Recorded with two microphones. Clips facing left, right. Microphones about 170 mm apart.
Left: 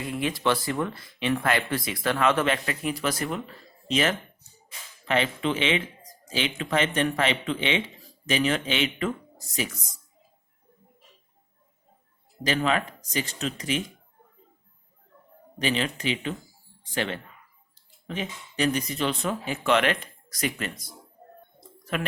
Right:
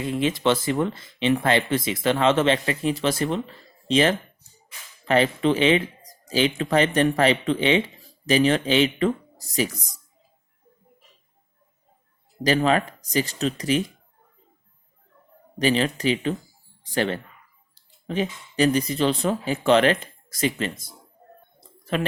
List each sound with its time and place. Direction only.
0.1 s speech: 25° right (ahead or behind)
12.4 s speech: 35° right (ahead or behind)
15.5 s speech: 40° right (ahead or behind)